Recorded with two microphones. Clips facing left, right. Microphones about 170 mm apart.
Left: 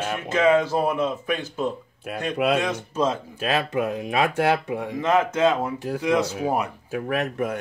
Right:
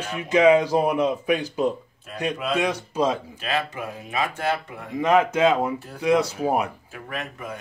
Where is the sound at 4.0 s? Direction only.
70° left (ahead or behind).